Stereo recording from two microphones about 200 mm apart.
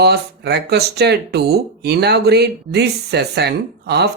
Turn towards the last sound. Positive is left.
turn(degrees=-55)  # may be behind; listen again after turning